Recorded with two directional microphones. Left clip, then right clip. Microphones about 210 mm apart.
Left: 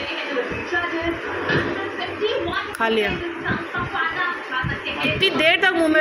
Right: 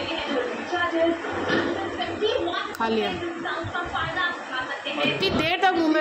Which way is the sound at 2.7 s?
5° right (ahead or behind).